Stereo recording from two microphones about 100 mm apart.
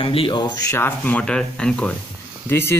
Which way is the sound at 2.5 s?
25° left (ahead or behind).